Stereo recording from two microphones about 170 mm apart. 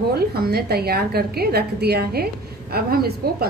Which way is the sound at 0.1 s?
65° right (ahead or behind).